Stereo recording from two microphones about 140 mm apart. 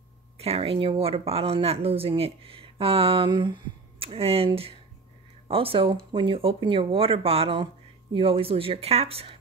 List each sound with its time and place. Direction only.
0.4 s speech: 45° right (ahead or behind)